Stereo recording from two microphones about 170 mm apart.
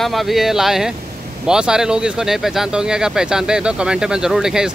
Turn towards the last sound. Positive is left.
turn(degrees=-5)  # may be behind; listen again after turning